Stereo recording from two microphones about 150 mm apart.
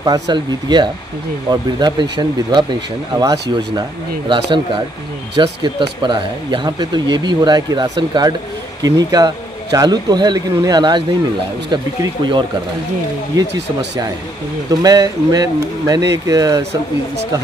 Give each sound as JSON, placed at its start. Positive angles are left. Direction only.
{"t": 0.0, "sound": "speech", "side_deg": -30}
{"t": 14.7, "sound": "speech", "side_deg": -25}